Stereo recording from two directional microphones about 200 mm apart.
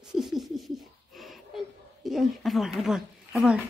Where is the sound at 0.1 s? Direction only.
Centre (ahead or behind).